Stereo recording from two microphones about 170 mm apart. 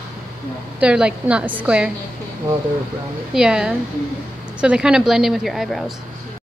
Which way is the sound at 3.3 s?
5° right (ahead or behind).